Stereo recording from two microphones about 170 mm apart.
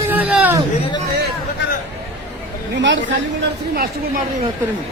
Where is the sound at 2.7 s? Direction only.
90° right.